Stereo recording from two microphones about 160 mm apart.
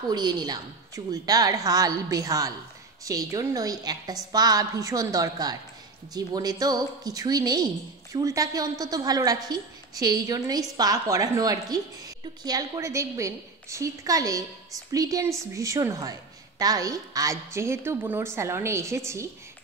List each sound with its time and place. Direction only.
0.1 s a woman's voice: 25° right (ahead or behind)